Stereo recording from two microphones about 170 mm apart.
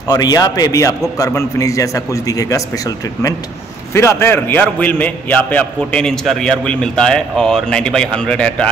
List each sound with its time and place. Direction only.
0.1 s a man's voice: 20° left (ahead or behind)
3.9 s a man's voice: 15° left (ahead or behind)